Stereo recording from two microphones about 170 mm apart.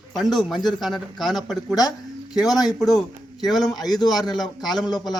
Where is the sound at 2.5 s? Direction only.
25° left (ahead or behind).